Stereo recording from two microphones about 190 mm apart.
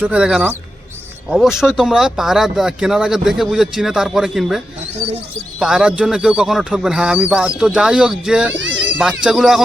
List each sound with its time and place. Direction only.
0.0 s speech: 5° right (ahead or behind)
8.5 s speech: 75° right (ahead or behind)
9.0 s speech: 5° right (ahead or behind)